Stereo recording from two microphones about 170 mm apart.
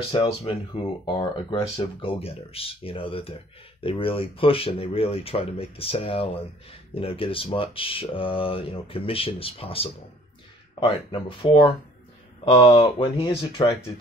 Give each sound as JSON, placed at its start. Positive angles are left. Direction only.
{"t": 0.1, "sound": "speech", "side_deg": 30}